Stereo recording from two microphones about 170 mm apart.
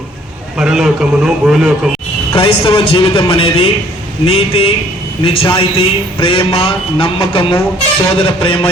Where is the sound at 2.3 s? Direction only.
30° left (ahead or behind).